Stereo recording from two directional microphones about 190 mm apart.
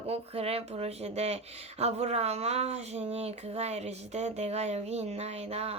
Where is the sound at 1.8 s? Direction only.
35° right (ahead or behind).